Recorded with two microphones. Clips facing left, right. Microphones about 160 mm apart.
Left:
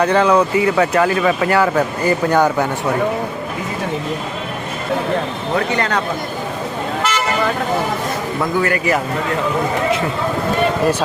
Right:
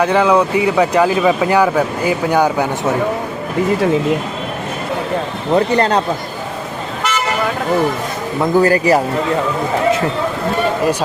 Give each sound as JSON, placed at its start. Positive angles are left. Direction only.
{"t": 0.0, "sound": "speech", "side_deg": -10}
{"t": 5.5, "sound": "speech", "side_deg": -30}
{"t": 8.5, "sound": "speech", "side_deg": -35}